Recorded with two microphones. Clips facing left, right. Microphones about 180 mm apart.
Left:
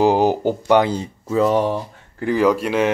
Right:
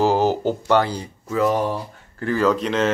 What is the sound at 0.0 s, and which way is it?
Speech, 15° left (ahead or behind).